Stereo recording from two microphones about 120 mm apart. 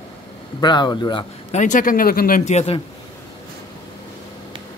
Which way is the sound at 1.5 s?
90° left.